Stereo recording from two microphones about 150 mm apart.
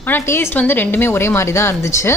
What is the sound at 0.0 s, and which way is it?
A woman's voice, 15° left (ahead or behind).